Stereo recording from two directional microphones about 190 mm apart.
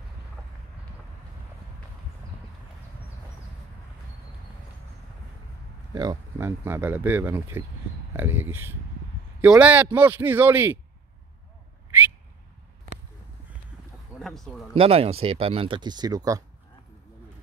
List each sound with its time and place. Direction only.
5.9 s speech: 15° right (ahead or behind)
14.2 s speech: centre (ahead or behind)
14.8 s speech: 30° right (ahead or behind)